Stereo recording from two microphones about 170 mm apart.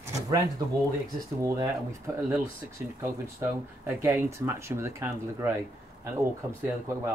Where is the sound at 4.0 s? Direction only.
15° right (ahead or behind).